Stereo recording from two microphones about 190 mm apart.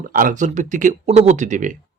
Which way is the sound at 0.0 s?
45° right (ahead or behind).